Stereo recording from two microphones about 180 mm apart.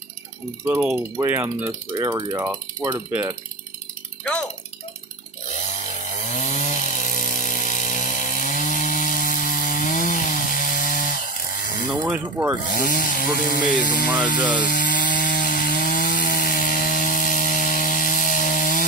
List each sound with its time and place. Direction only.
1.1 s speech: 15° right (ahead or behind)
2.4 s speech: 15° right (ahead or behind)
4.2 s speech: 5° left (ahead or behind)
5.5 s chainsaw: 40° left (ahead or behind)
11.9 s speech: 10° right (ahead or behind)
12.6 s speech: 50° left (ahead or behind)
14.0 s speech: 5° right (ahead or behind)
14.6 s wood: 50° left (ahead or behind)